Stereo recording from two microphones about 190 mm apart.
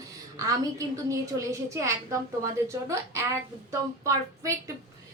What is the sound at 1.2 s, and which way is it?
A woman's voice, 15° right (ahead or behind).